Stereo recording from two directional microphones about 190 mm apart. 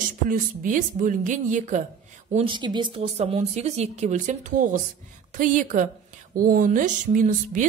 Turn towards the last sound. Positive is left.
turn(degrees=-40)  # may be behind; listen again after turning